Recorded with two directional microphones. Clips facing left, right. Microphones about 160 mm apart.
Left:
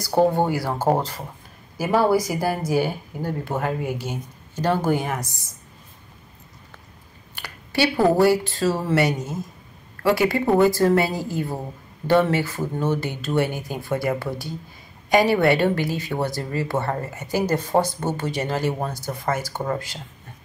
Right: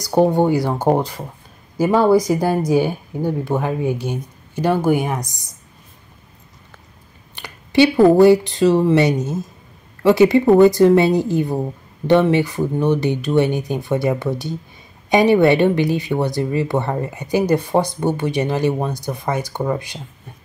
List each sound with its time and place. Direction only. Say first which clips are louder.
0.0 s speech: right 4 dB; 15° right (ahead or behind)
7.3 s speech: right 9 dB; 20° right (ahead or behind)